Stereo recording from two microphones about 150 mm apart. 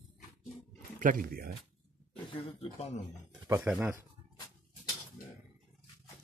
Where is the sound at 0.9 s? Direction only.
65° right (ahead or behind); by 1.5 s 80° right.